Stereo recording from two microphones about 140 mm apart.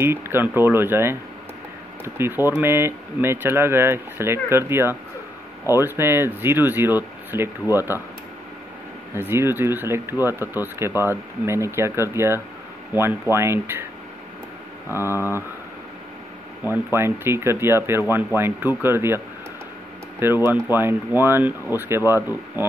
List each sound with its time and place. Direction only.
0.0 s speech: 15° right (ahead or behind)
2.1 s speech: 15° right (ahead or behind)
9.1 s speech: 15° right (ahead or behind)
15.0 s speech: 20° left (ahead or behind)
16.6 s speech: 15° right (ahead or behind)